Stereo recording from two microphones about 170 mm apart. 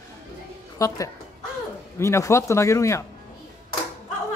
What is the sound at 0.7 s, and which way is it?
A woman's voice, 20° left (ahead or behind).